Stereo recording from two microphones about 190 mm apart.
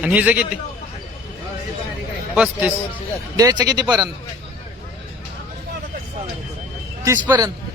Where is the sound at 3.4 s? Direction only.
20° right (ahead or behind).